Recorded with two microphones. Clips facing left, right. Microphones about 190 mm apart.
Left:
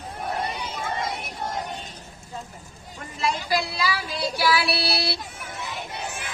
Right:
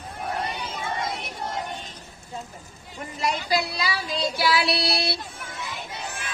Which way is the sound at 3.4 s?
20° right (ahead or behind).